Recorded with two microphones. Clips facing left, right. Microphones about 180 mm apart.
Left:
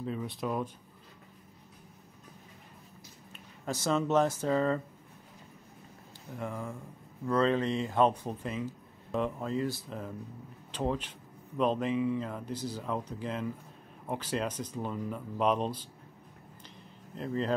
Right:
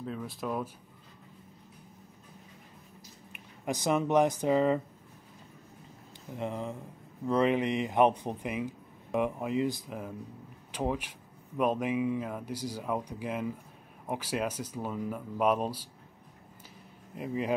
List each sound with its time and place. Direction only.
0.0 s speech: centre (ahead or behind)
3.3 s speech: 15° right (ahead or behind)
6.3 s speech: 20° right (ahead or behind)
17.1 s speech: 10° right (ahead or behind)